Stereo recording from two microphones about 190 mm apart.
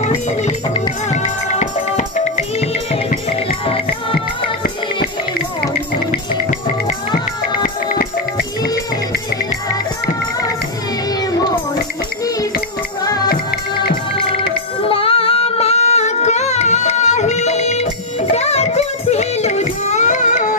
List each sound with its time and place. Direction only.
0.0 s music: 35° left (ahead or behind)
1.6 s music: 40° left (ahead or behind)
7.6 s music: 50° left (ahead or behind)
13.0 s music: 20° left (ahead or behind)
14.9 s singing: 30° left (ahead or behind)
18.3 s music: 35° left (ahead or behind)